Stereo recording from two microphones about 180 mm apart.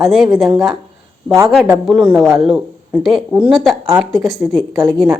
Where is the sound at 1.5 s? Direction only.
Centre (ahead or behind).